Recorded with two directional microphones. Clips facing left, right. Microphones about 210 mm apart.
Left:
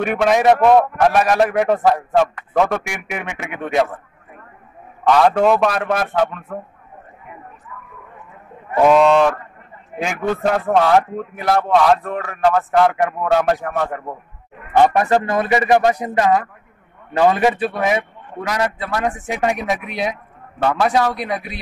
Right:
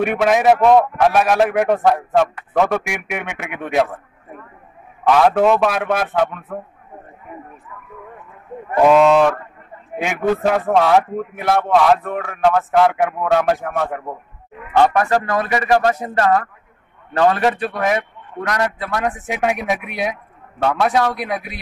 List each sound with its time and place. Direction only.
0.0 s a man's voice: centre (ahead or behind)
5.0 s a man's voice: centre (ahead or behind)
8.8 s a man's voice: centre (ahead or behind)
15.0 s a man's voice: 20° left (ahead or behind); by 21.5 s centre (ahead or behind)